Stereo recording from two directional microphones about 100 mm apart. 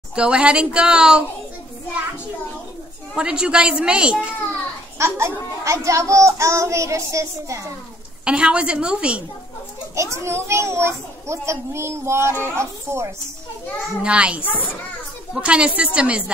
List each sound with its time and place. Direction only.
0.1 s a woman's voice: 10° right (ahead or behind)
3.2 s a woman's voice: 10° right (ahead or behind)
4.9 s a child's voice: 30° right (ahead or behind)
8.3 s a woman's voice: 10° right (ahead or behind)
9.9 s a child's voice: 30° right (ahead or behind)
14.0 s a woman's voice: 10° right (ahead or behind)